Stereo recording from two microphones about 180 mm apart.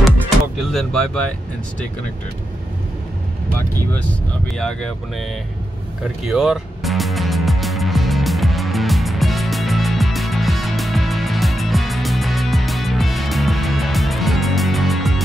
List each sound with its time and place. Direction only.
0.6 s speech: centre (ahead or behind)
4.6 s speech: 5° left (ahead or behind)
6.2 s music: centre (ahead or behind)